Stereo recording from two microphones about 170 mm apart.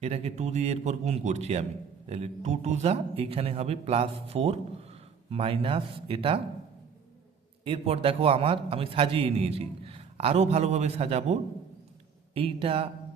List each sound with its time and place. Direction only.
0.0 s a man's voice: 40° right (ahead or behind)
7.6 s a man's voice: 35° right (ahead or behind)